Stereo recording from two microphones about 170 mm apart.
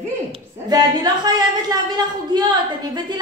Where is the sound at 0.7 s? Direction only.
25° right (ahead or behind).